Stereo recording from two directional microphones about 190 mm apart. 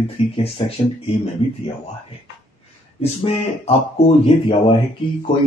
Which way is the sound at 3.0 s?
30° left (ahead or behind).